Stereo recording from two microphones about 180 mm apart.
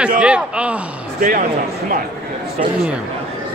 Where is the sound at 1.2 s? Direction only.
50° right (ahead or behind).